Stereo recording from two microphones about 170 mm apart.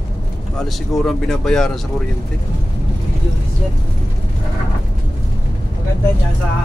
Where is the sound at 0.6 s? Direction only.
Centre (ahead or behind).